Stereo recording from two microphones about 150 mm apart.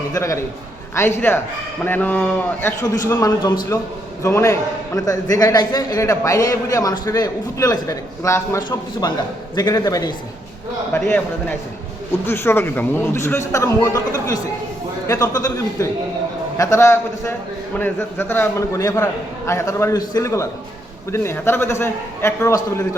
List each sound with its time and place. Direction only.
0.1 s a man's voice: 20° left (ahead or behind)
3.1 s a man's voice: 25° left (ahead or behind)
10.9 s a man's voice: 15° left (ahead or behind)